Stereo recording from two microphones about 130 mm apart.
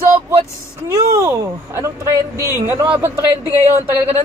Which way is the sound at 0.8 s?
25° right (ahead or behind).